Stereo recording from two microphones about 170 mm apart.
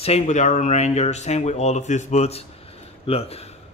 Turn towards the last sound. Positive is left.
turn(degrees=35)  # may be behind; listen again after turning